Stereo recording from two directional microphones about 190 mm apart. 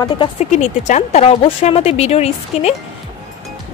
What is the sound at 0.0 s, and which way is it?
A woman's voice, 30° left (ahead or behind).